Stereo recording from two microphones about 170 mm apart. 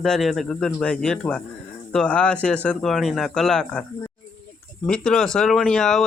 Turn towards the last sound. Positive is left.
turn(degrees=5)  # may be behind; listen again after turning